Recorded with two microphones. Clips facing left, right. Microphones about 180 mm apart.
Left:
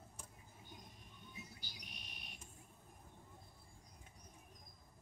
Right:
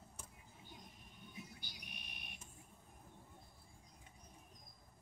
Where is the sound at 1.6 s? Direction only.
55° right (ahead or behind).